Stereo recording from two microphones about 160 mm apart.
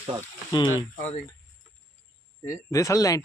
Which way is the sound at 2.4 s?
20° left (ahead or behind).